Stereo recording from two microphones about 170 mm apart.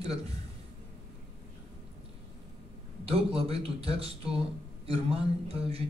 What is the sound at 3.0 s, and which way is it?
Speech, 35° right (ahead or behind).